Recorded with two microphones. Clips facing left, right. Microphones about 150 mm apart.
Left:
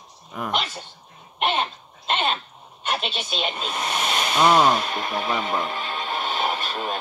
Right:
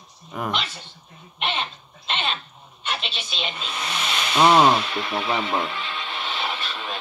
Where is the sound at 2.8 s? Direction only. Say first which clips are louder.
Left 4 dB; 45° left (ahead or behind).